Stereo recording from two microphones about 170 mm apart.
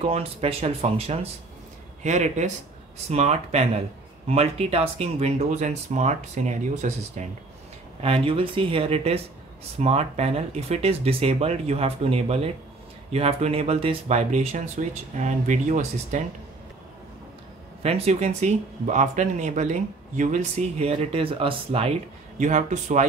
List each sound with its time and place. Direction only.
0.0 s speech: 35° right (ahead or behind)
8.0 s speech: 35° right (ahead or behind)
17.8 s speech: 40° right (ahead or behind)
22.4 s speech: 45° right (ahead or behind)